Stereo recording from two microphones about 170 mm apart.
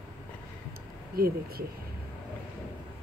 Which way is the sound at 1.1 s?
60° right (ahead or behind).